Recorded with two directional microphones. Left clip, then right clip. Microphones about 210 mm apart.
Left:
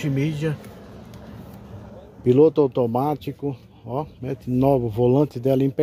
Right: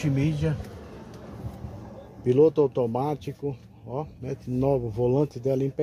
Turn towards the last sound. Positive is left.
turn(degrees=35)  # may be behind; listen again after turning